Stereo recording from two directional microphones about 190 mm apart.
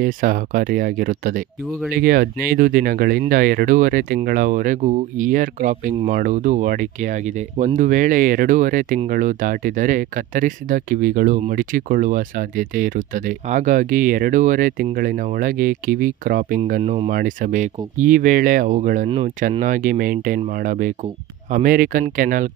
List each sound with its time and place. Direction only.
0.0 s speech: 45° right (ahead or behind)
16.8 s speech: 30° right (ahead or behind)
17.1 s speech: 45° right (ahead or behind)